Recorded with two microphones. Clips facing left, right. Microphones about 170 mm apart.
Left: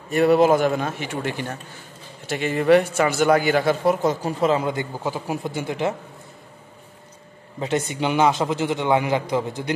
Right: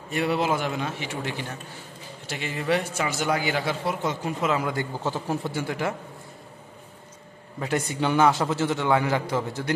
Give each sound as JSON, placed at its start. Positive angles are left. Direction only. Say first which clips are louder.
{"t": 0.1, "sound": "a man's voice", "louder": "left 9 dB", "side_deg": 45}
{"t": 5.0, "sound": "speech", "louder": "left 1 dB", "side_deg": 10}
{"t": 7.6, "sound": "a man's voice", "louder": "left 2 dB", "side_deg": 20}